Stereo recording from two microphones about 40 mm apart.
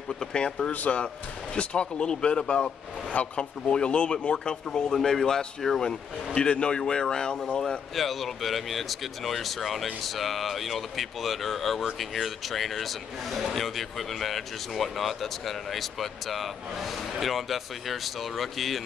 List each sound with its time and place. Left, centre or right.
0.2 s speech: left
0.7 s speech: left
4.6 s a man's voice: centre
6.3 s speech: left
7.9 s speech: centre